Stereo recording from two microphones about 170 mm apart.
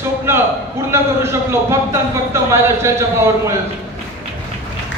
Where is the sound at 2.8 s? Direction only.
15° right (ahead or behind).